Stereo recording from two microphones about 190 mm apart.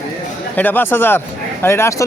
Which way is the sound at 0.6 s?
10° left (ahead or behind).